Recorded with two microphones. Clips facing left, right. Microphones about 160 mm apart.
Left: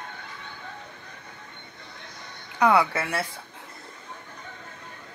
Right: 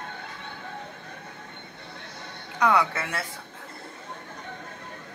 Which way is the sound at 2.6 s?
10° left (ahead or behind).